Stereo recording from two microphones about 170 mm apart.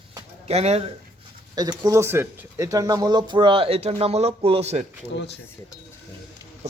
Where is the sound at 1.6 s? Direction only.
20° right (ahead or behind); by 4.8 s 35° right (ahead or behind).